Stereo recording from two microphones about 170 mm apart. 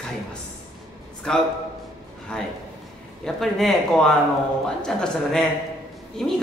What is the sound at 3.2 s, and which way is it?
A man's voice, centre (ahead or behind).